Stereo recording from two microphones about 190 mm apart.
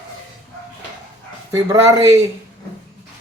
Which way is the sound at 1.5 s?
15° right (ahead or behind).